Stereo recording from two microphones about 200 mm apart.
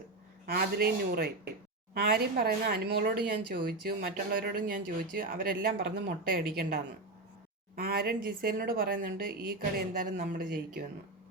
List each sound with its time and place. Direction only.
0.4 s speech: 50° right (ahead or behind)
7.8 s speech: 50° right (ahead or behind)